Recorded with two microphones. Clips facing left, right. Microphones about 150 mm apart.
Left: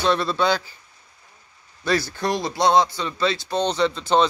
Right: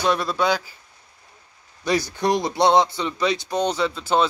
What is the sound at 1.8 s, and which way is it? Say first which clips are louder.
Speech: right 1 dB; 15° right (ahead or behind).